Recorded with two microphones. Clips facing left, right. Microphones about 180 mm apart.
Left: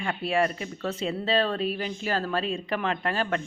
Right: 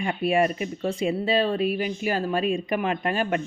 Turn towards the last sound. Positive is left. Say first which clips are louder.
# right 3 dB
turn(degrees=-15)  # may be behind; listen again after turning